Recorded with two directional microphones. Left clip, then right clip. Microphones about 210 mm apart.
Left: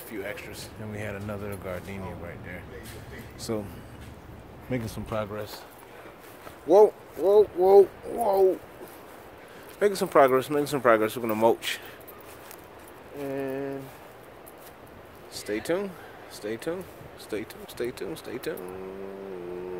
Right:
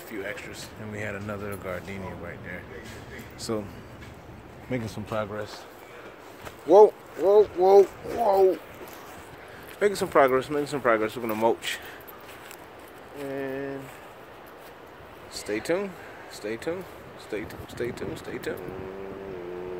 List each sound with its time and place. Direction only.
0.1 s speech: 10° left (ahead or behind)
4.6 s speech: centre (ahead or behind)
6.7 s speech: centre (ahead or behind)
7.3 s speech: 15° left (ahead or behind)
9.8 s speech: 10° left (ahead or behind)
13.3 s speech: 25° left (ahead or behind)
15.3 s speech: 5° left (ahead or behind)